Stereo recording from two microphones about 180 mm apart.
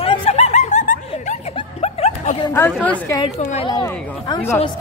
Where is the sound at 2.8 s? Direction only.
10° left (ahead or behind).